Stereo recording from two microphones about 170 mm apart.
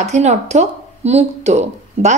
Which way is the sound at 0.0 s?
40° right (ahead or behind).